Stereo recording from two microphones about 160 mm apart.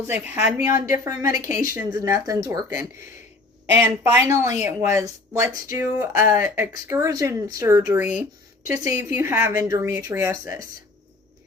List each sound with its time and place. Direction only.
0.1 s speech: 10° right (ahead or behind)